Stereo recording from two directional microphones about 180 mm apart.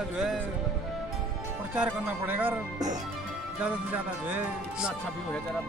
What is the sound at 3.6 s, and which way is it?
Speech, 10° right (ahead or behind).